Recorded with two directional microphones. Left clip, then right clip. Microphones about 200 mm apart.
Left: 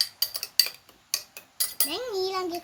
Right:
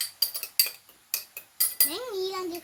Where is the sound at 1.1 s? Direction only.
5° left (ahead or behind).